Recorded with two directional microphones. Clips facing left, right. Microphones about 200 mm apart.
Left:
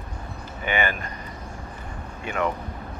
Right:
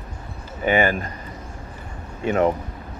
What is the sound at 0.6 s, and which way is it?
Speech, 40° right (ahead or behind).